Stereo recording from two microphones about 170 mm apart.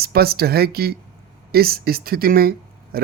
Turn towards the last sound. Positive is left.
turn(degrees=-65)  # may be behind; listen again after turning